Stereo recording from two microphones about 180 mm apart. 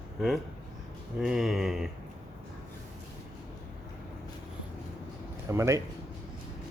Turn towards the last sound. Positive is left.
turn(degrees=-15)  # may be behind; listen again after turning